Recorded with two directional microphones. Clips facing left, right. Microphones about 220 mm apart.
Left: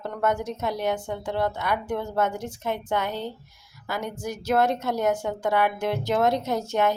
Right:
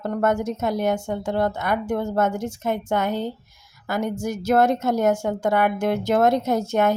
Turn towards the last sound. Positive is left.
turn(degrees=-50)  # may be behind; listen again after turning